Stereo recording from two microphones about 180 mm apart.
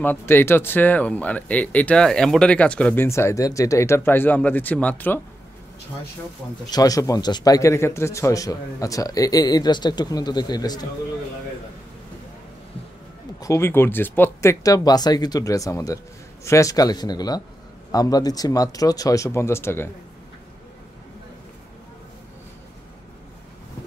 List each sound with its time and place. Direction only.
0.0 s speech: 10° left (ahead or behind)
6.7 s a man's voice: 20° left (ahead or behind)
13.4 s a man's voice: 15° left (ahead or behind)